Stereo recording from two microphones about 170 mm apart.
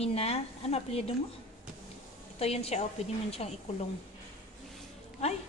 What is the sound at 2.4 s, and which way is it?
A woman's voice, 35° left (ahead or behind).